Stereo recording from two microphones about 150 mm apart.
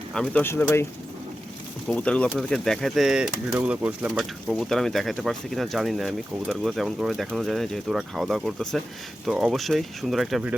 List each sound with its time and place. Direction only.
0.1 s speech: 5° left (ahead or behind)
0.4 s speech: 15° left (ahead or behind)
1.9 s speech: 10° left (ahead or behind)